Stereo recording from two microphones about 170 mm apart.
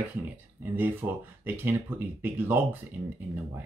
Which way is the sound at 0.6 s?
10° right (ahead or behind).